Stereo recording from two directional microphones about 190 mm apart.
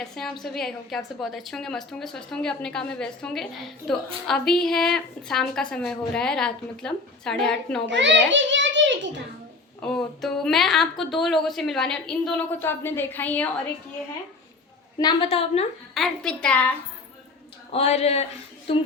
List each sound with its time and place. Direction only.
0.0 s a woman's voice: centre (ahead or behind)
7.9 s a sound: 70° right (ahead or behind)
9.9 s a woman's voice: centre (ahead or behind)
14.9 s a woman's voice: 25° left (ahead or behind)
16.0 s a woman's voice: centre (ahead or behind)
17.7 s speech: 35° left (ahead or behind)